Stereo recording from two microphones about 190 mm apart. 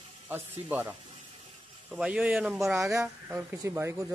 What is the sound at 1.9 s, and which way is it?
Speech, 5° right (ahead or behind).